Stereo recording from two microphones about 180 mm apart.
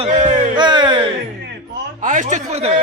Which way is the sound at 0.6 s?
25° right (ahead or behind).